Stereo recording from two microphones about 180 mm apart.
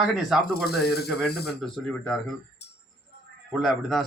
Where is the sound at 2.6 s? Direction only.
70° left (ahead or behind).